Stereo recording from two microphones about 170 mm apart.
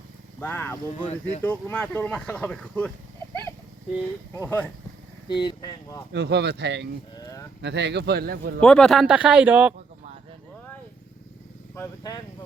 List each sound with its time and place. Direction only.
0.3 s speech: 10° left (ahead or behind)
4.4 s speech: 10° left (ahead or behind)
5.3 s speech: 25° left (ahead or behind)
6.1 s speech: 75° right (ahead or behind)
7.2 s a sound: 20° left (ahead or behind)
7.6 s speech: 90° right; by 8.6 s 65° right (ahead or behind)
8.6 s speech: 5° left (ahead or behind)
11.7 s speech: 15° left (ahead or behind)